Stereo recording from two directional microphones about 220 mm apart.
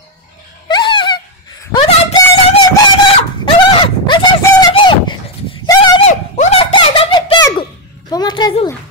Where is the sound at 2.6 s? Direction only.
20° left (ahead or behind).